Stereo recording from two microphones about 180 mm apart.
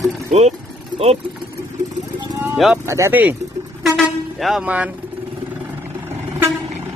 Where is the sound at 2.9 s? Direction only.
15° right (ahead or behind).